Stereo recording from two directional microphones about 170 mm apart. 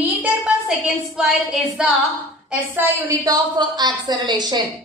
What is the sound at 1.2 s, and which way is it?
Speech, 5° right (ahead or behind).